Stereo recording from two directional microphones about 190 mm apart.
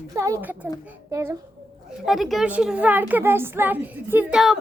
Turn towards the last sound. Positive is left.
turn(degrees=-5)  # may be behind; listen again after turning